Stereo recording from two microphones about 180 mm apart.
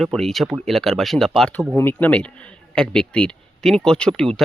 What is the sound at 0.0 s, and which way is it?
Speech, centre (ahead or behind).